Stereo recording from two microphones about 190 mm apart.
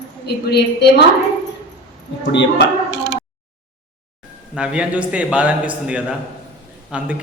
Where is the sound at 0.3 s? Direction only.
60° left (ahead or behind).